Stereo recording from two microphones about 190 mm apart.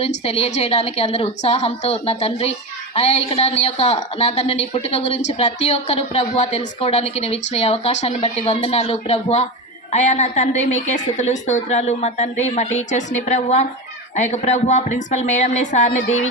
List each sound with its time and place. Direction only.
0.0 s speech: 30° left (ahead or behind)